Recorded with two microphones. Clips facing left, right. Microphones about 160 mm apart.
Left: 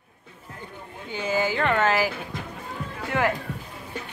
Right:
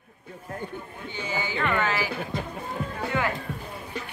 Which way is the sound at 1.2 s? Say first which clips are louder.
Left 5 dB; 45° left (ahead or behind).